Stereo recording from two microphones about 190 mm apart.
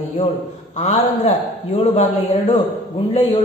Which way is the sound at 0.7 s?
35° left (ahead or behind).